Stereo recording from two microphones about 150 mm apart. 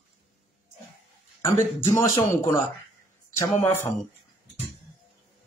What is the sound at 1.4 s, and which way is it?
A man's voice, 20° left (ahead or behind).